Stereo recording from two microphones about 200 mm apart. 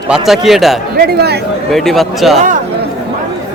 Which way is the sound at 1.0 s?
55° right (ahead or behind).